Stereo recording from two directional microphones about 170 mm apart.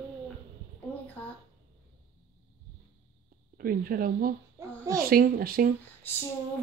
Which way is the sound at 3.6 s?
60° right (ahead or behind).